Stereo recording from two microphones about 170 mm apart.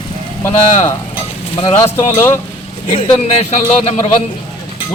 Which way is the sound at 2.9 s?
25° left (ahead or behind).